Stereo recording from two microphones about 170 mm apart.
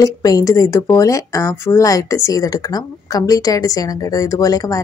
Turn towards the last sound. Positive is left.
turn(degrees=20)  # may be behind; listen again after turning